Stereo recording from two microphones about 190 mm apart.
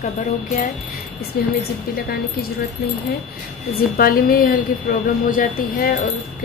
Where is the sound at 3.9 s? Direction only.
50° left (ahead or behind).